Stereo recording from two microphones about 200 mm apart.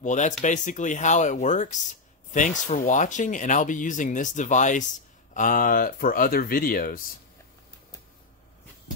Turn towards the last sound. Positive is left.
turn(degrees=45)  # may be behind; listen again after turning